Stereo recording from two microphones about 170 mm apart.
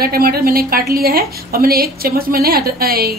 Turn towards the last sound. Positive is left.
turn(degrees=-65)  # may be behind; listen again after turning